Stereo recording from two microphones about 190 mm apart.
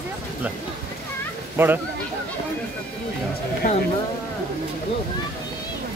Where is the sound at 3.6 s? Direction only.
40° left (ahead or behind).